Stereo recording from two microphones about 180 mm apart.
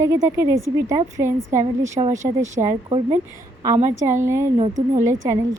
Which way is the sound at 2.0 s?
35° right (ahead or behind).